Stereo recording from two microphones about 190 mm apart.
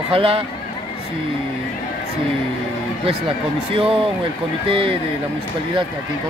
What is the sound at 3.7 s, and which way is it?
Speech, 30° right (ahead or behind).